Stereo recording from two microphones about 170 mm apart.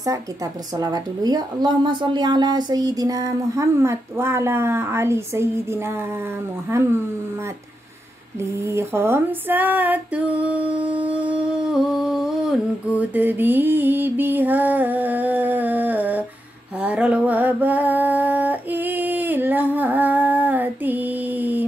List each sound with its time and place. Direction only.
0.0 s a woman's voice: 20° right (ahead or behind)
8.4 s female singing: 15° right (ahead or behind)
16.8 s a sound: 5° right (ahead or behind)